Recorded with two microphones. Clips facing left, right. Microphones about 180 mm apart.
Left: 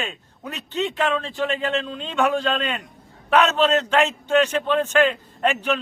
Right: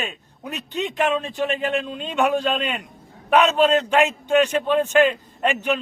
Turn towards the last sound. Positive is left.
turn(degrees=-15)  # may be behind; listen again after turning